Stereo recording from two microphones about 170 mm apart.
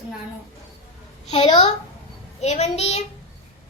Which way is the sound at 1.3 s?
35° left (ahead or behind).